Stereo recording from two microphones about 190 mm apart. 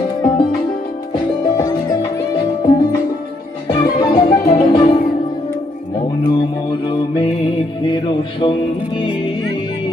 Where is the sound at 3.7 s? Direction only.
25° left (ahead or behind).